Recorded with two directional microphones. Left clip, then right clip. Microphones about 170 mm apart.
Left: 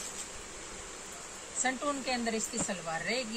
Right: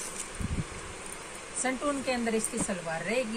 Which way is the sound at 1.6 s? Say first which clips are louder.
Right 2 dB; 5° right (ahead or behind).